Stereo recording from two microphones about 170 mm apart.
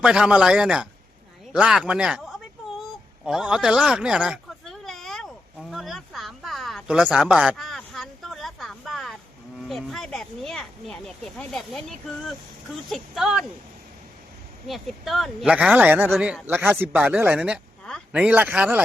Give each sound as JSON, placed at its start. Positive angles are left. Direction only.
{"t": 0.0, "sound": "speech", "side_deg": -5}
{"t": 3.2, "sound": "a sound", "side_deg": -5}
{"t": 9.6, "sound": "speech", "side_deg": 0}
{"t": 14.7, "sound": "speech", "side_deg": 0}